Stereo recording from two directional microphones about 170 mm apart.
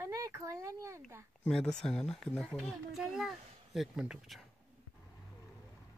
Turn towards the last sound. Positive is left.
turn(degrees=-5)  # may be behind; listen again after turning